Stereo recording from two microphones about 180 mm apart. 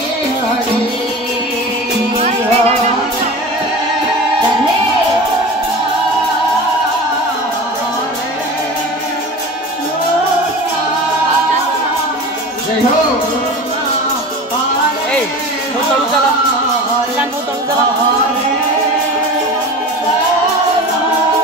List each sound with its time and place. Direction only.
2.1 s music: 35° right (ahead or behind)